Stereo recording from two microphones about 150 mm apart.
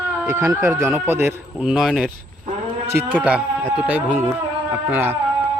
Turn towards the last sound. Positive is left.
turn(degrees=-10)  # may be behind; listen again after turning